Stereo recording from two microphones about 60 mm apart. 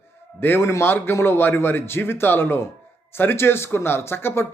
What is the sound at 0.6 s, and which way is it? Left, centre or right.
Speech, left.